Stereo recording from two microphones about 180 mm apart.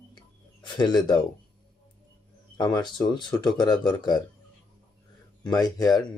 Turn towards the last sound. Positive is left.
turn(degrees=20)  # may be behind; listen again after turning